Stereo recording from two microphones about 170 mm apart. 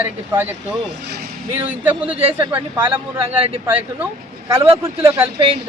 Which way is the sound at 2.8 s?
35° right (ahead or behind).